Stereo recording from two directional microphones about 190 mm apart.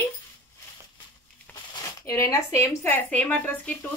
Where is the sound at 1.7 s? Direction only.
15° left (ahead or behind).